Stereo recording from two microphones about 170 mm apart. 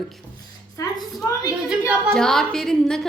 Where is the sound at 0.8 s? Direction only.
20° left (ahead or behind).